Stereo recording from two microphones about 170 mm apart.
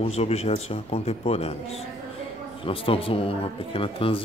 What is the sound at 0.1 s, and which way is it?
Speech, 40° left (ahead or behind).